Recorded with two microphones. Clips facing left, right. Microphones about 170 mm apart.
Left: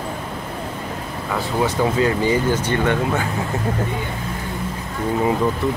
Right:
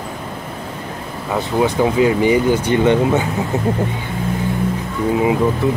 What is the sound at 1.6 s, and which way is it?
Speech, 15° right (ahead or behind).